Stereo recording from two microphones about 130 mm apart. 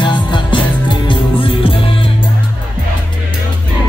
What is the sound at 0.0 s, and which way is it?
Music, 35° left (ahead or behind).